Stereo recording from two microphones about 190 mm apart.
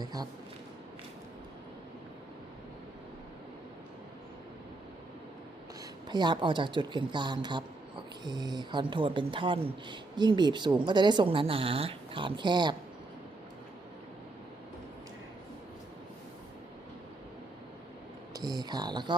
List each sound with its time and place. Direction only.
0.0 s speech: 20° right (ahead or behind)
6.1 s speech: 25° right (ahead or behind)
18.3 s a sound: 20° right (ahead or behind)